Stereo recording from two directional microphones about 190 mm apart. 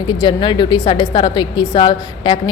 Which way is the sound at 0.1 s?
25° left (ahead or behind).